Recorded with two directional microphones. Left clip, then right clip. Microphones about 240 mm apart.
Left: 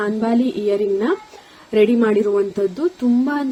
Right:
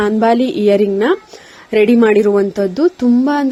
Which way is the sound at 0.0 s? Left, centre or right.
Right.